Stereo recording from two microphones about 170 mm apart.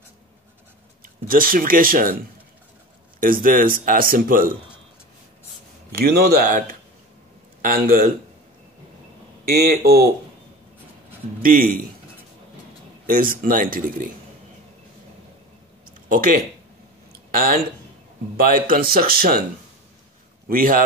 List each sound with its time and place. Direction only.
1.2 s speech: 55° right (ahead or behind)
3.2 s speech: 55° right (ahead or behind)
5.9 s speech: 65° right (ahead or behind)
6.4 s speech: 50° right (ahead or behind)
9.7 s speech: 65° right (ahead or behind)
13.0 s speech: 55° right (ahead or behind)
16.1 s speech: 55° right (ahead or behind)
20.4 s speech: 55° right (ahead or behind)